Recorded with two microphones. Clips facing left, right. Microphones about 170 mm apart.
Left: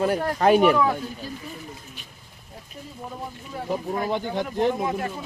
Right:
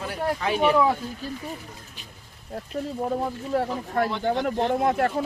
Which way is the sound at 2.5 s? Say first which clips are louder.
Right 11 dB; 60° right (ahead or behind).